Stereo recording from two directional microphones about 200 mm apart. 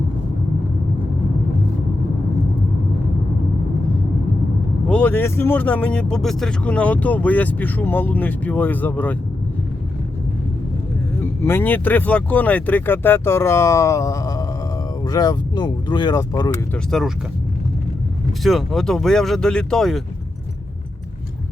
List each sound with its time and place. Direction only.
4.9 s speech: 5° left (ahead or behind)
11.2 s speech: 10° left (ahead or behind)
16.7 s speech: centre (ahead or behind)
18.4 s speech: centre (ahead or behind)